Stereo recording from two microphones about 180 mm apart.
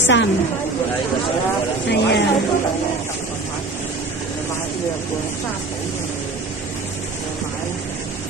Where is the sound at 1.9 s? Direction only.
75° left (ahead or behind).